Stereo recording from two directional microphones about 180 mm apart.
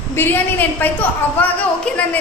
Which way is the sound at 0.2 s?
15° left (ahead or behind).